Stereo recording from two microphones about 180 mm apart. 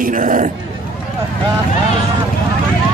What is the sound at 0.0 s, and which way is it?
Speech, 45° right (ahead or behind).